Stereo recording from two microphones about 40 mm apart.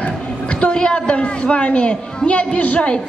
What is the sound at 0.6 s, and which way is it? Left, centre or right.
A woman's voice, left.